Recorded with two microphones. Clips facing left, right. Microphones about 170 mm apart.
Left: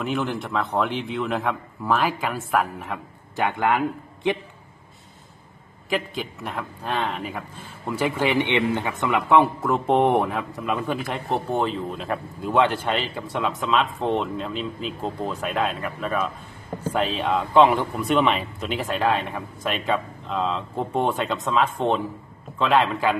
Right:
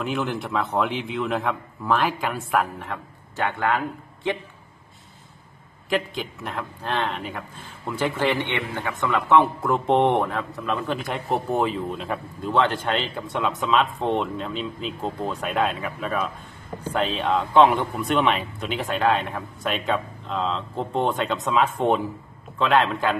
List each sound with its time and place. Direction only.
0.0 s a man's voice: centre (ahead or behind); by 4.4 s 20° left (ahead or behind)
5.9 s a man's voice: centre (ahead or behind); by 9.4 s 15° left (ahead or behind)
9.4 s a man's voice: centre (ahead or behind)